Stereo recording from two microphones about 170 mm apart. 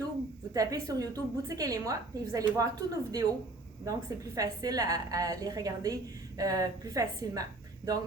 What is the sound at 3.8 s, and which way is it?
A woman's voice, 20° right (ahead or behind).